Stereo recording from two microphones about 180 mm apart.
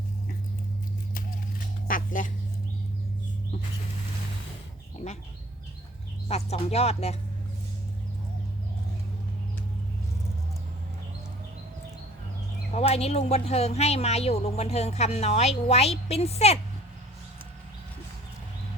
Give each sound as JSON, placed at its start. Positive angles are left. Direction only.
{"t": 1.9, "sound": "duck", "side_deg": 50}
{"t": 5.0, "sound": "bird", "side_deg": 35}
{"t": 6.2, "sound": "speech", "side_deg": 35}
{"t": 12.7, "sound": "speech", "side_deg": 35}